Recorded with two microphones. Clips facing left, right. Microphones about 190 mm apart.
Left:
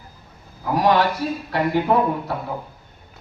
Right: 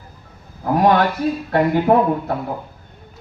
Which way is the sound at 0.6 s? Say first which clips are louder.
Right 3 dB; 50° right (ahead or behind).